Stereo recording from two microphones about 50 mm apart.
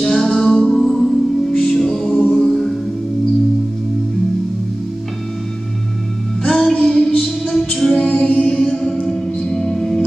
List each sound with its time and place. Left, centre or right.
0.0 s music: centre
6.4 s music: centre
8.0 s music: centre